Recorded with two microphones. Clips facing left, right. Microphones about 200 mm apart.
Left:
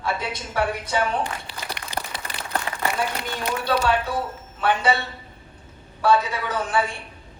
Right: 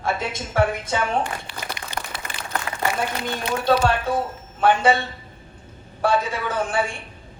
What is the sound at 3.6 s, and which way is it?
Speech, 50° right (ahead or behind).